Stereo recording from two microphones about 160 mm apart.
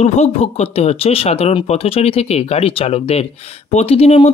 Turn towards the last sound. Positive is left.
turn(degrees=40)  # may be behind; listen again after turning